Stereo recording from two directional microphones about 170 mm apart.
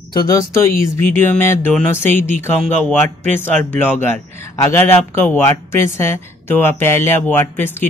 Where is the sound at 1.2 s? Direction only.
10° left (ahead or behind).